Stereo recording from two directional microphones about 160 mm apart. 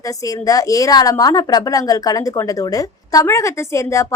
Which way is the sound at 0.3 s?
20° left (ahead or behind).